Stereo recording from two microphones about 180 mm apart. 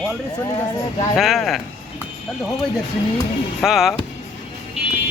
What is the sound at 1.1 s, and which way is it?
Speech, centre (ahead or behind).